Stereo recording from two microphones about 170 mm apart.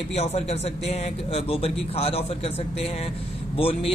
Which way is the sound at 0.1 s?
40° left (ahead or behind).